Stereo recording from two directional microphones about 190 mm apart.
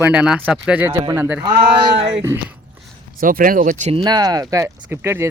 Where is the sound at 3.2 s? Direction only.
50° right (ahead or behind).